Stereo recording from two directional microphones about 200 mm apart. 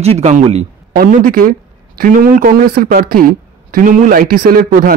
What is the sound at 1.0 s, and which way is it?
Speech, 45° right (ahead or behind).